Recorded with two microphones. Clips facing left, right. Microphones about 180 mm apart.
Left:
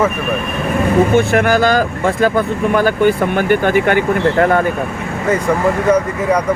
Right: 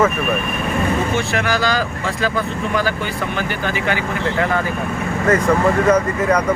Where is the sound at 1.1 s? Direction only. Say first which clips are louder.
Left 8 dB; 50° left (ahead or behind).